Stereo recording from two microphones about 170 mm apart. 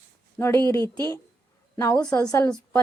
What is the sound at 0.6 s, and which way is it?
Speech, 25° right (ahead or behind).